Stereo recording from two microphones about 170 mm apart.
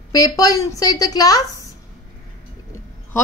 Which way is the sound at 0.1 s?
20° left (ahead or behind).